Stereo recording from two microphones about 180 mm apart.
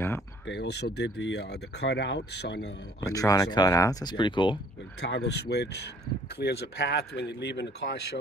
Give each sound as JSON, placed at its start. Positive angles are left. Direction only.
{"t": 0.5, "sound": "speech", "side_deg": 70}
{"t": 3.0, "sound": "speech", "side_deg": 20}
{"t": 5.0, "sound": "speech", "side_deg": 70}